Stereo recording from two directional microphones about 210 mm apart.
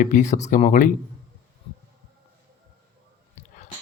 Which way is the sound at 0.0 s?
35° left (ahead or behind).